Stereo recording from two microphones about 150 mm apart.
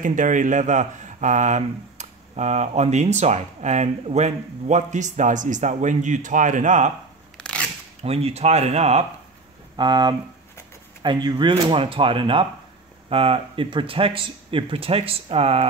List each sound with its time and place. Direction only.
0.0 s speech: 60° right (ahead or behind)
7.3 s scissors: 5° left (ahead or behind)
8.0 s speech: 45° right (ahead or behind)
9.8 s speech: 30° right (ahead or behind)